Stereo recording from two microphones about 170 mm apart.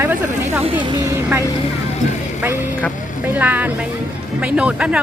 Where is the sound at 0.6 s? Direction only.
30° right (ahead or behind).